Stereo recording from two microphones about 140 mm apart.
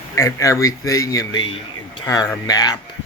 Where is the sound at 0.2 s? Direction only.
25° left (ahead or behind).